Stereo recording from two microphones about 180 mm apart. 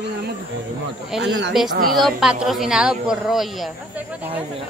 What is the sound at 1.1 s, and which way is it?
A woman's voice, 5° right (ahead or behind).